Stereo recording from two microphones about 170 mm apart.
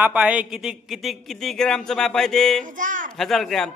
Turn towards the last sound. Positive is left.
turn(degrees=0)  # may be behind; listen again after turning